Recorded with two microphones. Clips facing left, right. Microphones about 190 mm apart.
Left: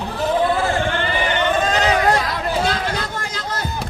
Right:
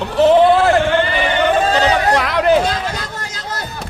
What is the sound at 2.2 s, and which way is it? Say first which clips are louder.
Chatter: right 9 dB; 75° right (ahead or behind).